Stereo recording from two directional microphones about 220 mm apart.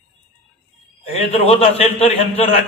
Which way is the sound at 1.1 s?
30° left (ahead or behind).